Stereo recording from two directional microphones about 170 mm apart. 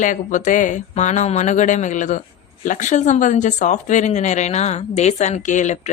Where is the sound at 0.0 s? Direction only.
50° left (ahead or behind).